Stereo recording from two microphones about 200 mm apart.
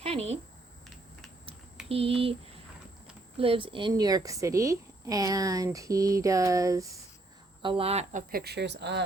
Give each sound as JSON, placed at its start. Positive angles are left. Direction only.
{"t": 0.0, "sound": "speech", "side_deg": -30}
{"t": 1.9, "sound": "speech", "side_deg": -30}
{"t": 3.3, "sound": "a woman's voice", "side_deg": -25}
{"t": 7.6, "sound": "speech", "side_deg": -30}
{"t": 8.3, "sound": "speech", "side_deg": -50}